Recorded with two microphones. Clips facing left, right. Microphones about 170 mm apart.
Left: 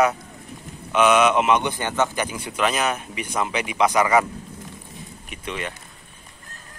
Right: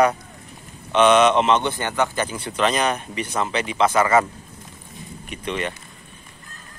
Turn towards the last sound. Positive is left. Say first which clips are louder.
# right 4 dB
turn(degrees=5)  # may be behind; listen again after turning